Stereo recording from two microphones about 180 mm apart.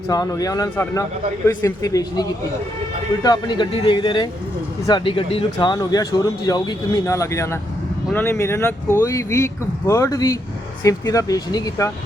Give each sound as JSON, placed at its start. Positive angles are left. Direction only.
{"t": 0.1, "sound": "speech", "side_deg": 20}
{"t": 3.2, "sound": "speech", "side_deg": 25}